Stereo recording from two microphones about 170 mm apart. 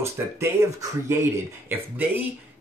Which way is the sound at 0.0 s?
15° right (ahead or behind).